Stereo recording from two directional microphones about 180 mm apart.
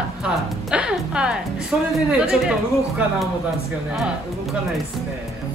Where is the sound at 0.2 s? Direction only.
5° right (ahead or behind).